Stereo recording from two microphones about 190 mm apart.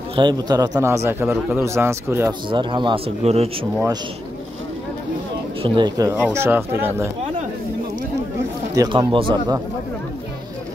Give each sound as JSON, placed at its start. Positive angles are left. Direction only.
{"t": 0.1, "sound": "speech", "side_deg": -25}
{"t": 2.5, "sound": "a man's voice", "side_deg": -25}
{"t": 5.6, "sound": "speech", "side_deg": -25}
{"t": 8.7, "sound": "a man's voice", "side_deg": -25}